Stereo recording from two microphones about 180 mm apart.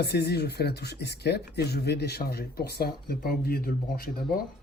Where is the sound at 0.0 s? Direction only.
65° left (ahead or behind).